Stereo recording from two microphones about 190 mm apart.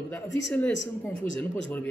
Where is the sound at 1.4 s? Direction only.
10° left (ahead or behind).